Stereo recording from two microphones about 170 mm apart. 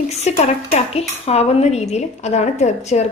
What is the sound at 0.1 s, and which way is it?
Speech, 40° left (ahead or behind).